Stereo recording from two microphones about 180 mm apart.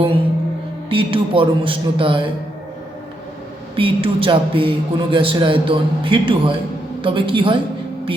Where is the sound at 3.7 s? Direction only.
30° right (ahead or behind).